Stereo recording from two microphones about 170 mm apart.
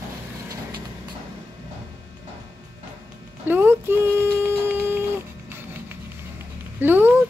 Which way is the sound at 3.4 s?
10° right (ahead or behind).